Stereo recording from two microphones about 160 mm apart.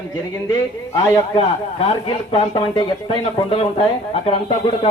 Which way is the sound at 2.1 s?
30° left (ahead or behind).